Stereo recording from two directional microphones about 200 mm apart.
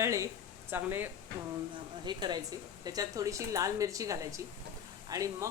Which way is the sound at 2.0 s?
20° right (ahead or behind).